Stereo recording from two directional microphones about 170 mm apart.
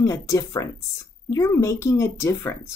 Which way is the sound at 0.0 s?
20° left (ahead or behind).